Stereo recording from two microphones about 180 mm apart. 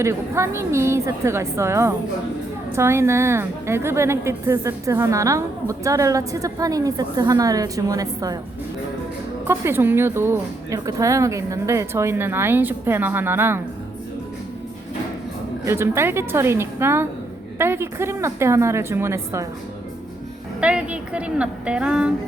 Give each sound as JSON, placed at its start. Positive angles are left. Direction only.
{"t": 0.0, "sound": "a woman's voice", "side_deg": -15}
{"t": 9.5, "sound": "a woman's voice", "side_deg": -15}
{"t": 15.6, "sound": "a woman's voice", "side_deg": -15}
{"t": 20.6, "sound": "a woman's voice", "side_deg": -5}